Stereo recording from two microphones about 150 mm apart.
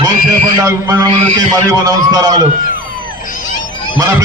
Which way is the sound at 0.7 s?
20° right (ahead or behind).